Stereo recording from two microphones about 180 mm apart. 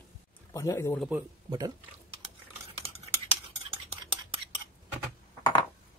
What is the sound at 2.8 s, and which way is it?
Typing, 35° right (ahead or behind).